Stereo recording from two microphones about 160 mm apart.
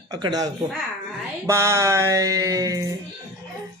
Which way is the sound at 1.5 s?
15° right (ahead or behind).